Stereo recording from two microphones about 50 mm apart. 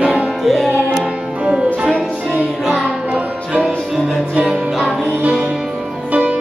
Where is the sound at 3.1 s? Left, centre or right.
Centre.